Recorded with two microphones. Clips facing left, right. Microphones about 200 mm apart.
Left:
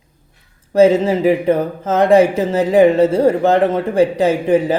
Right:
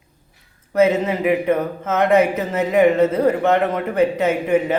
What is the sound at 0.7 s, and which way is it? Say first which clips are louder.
Speech: left 5 dB; 30° left (ahead or behind).